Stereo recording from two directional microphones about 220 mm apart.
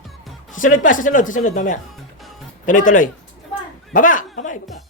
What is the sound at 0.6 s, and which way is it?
Speech, 35° left (ahead or behind).